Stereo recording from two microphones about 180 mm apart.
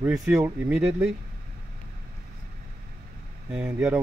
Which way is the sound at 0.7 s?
5° right (ahead or behind).